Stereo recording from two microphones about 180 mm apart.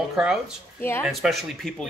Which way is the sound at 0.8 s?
15° left (ahead or behind).